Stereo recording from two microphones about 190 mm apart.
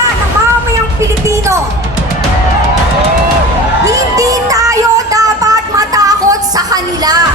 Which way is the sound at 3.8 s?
15° right (ahead or behind).